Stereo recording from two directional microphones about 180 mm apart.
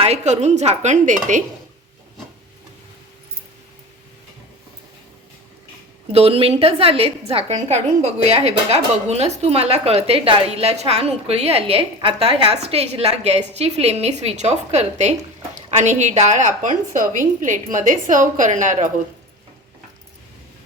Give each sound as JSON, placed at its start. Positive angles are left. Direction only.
{"t": 0.0, "sound": "a woman's voice", "side_deg": -35}
{"t": 6.1, "sound": "a woman's voice", "side_deg": -35}